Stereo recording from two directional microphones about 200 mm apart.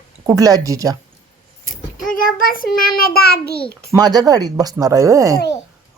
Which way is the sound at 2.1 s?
45° left (ahead or behind).